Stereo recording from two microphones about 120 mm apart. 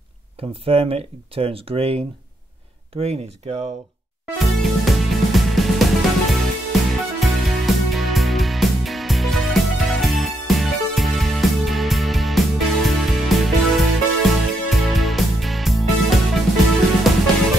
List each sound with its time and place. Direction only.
0.4 s speech: 50° right (ahead or behind)
4.4 s music: centre (ahead or behind)